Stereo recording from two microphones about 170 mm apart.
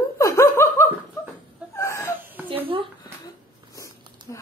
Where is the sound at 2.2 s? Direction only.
10° right (ahead or behind).